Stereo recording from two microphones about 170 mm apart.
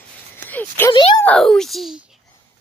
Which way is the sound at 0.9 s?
25° left (ahead or behind).